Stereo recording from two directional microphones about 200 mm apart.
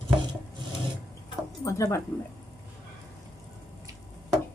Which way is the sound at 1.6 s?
15° left (ahead or behind).